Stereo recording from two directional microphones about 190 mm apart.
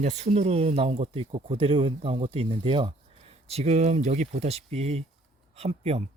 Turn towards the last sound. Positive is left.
turn(degrees=-30)  # may be behind; listen again after turning